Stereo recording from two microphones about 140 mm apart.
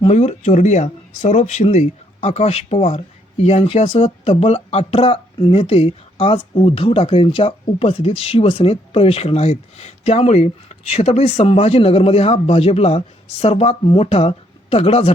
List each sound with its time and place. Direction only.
0.0 s speech: 55° left (ahead or behind)